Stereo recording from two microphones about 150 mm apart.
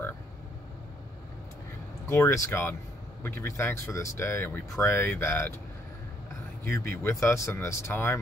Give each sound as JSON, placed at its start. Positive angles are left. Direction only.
{"t": 2.0, "sound": "speech", "side_deg": 20}
{"t": 6.7, "sound": "speech", "side_deg": 15}